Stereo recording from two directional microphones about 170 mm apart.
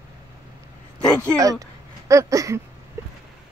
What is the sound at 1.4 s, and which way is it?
Speech, 20° right (ahead or behind).